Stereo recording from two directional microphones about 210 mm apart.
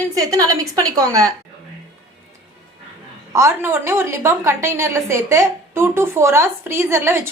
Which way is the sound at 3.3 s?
15° right (ahead or behind).